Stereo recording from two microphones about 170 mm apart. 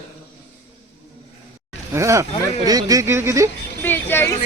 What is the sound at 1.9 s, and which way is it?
Speech, 15° right (ahead or behind).